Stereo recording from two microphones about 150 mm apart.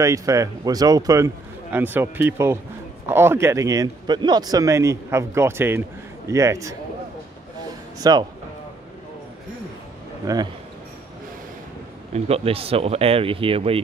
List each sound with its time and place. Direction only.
0.0 s a man's voice: 20° right (ahead or behind)
8.0 s a man's voice: 25° right (ahead or behind)
10.2 s a man's voice: 25° right (ahead or behind)
12.1 s speech: 40° right (ahead or behind)